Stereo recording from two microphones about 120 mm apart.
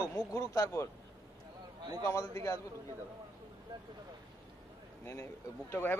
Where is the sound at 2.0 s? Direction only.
25° left (ahead or behind).